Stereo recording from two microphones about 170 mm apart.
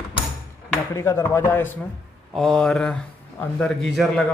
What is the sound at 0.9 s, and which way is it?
Speech, 15° left (ahead or behind).